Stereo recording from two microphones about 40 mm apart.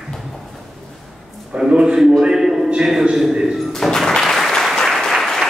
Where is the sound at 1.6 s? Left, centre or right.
Right.